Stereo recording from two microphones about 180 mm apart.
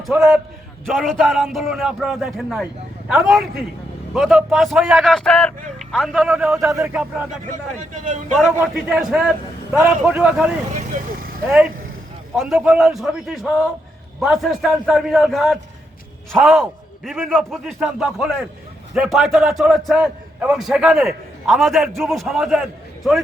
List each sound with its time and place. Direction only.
0.0 s a man's voice: centre (ahead or behind)
8.6 s a man's voice: 5° right (ahead or behind)
10.8 s vehicle: 45° right (ahead or behind)
12.4 s a man's voice: 5° right (ahead or behind)